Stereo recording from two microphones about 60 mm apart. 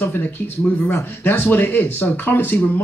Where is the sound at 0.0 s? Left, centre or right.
Left.